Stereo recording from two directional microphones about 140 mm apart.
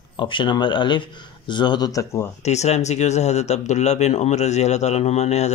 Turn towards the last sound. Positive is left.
turn(degrees=50)  # may be behind; listen again after turning